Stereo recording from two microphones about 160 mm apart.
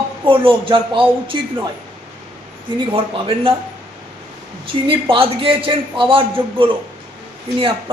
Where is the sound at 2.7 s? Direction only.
30° right (ahead or behind).